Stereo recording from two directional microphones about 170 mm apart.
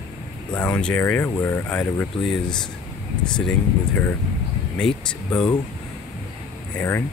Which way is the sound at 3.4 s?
10° left (ahead or behind).